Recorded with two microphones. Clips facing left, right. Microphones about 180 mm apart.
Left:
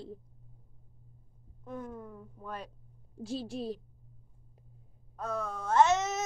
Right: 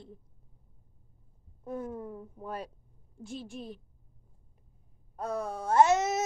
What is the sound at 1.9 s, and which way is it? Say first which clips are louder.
Speech: right 5 dB; 25° right (ahead or behind).